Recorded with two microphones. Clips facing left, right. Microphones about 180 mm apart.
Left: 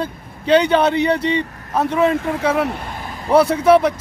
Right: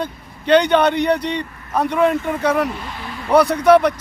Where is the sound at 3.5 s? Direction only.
5° left (ahead or behind).